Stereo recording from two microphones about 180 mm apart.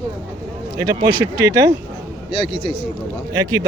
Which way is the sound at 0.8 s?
20° right (ahead or behind).